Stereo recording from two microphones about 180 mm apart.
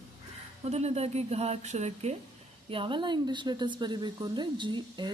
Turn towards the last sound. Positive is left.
turn(degrees=-25)  # may be behind; listen again after turning